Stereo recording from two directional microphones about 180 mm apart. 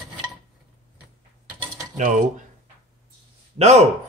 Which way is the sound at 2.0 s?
45° right (ahead or behind).